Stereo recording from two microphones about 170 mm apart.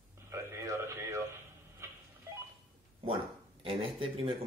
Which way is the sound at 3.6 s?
30° right (ahead or behind).